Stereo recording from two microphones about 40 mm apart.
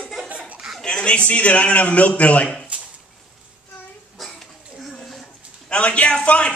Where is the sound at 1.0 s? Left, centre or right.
Left.